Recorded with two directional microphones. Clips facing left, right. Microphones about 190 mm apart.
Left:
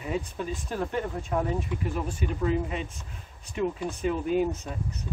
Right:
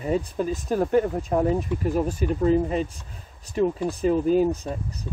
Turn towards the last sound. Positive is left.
turn(degrees=-35)  # may be behind; listen again after turning